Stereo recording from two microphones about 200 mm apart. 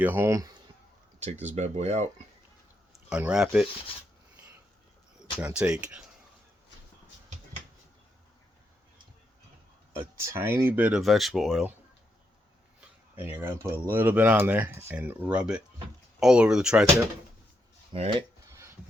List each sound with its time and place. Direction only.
0.0 s speech: 10° right (ahead or behind)
1.2 s speech: 35° right (ahead or behind)
2.9 s speech: 5° right (ahead or behind)
5.4 s speech: 5° right (ahead or behind)
10.2 s speech: 15° right (ahead or behind)
13.1 s speech: 10° right (ahead or behind)
17.9 s speech: 30° right (ahead or behind)
18.5 s a sound: 15° right (ahead or behind)